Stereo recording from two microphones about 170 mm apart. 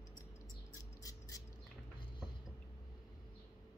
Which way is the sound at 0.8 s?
20° left (ahead or behind).